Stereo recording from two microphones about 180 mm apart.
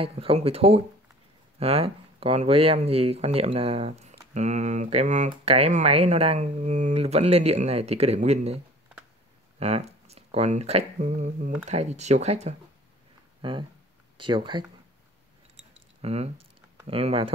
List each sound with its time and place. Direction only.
0.0 s speech: 30° right (ahead or behind)
9.6 s speech: 35° right (ahead or behind)
13.4 s speech: 25° right (ahead or behind)
15.5 s a sound: 35° right (ahead or behind)
16.8 s speech: 35° right (ahead or behind)